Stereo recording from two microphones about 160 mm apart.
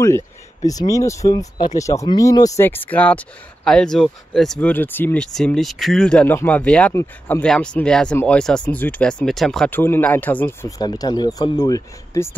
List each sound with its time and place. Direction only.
0.7 s speech: 20° left (ahead or behind)
10.8 s speech: 25° left (ahead or behind)